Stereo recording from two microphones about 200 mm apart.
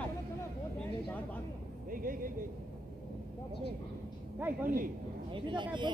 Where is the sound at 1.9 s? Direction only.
45° right (ahead or behind).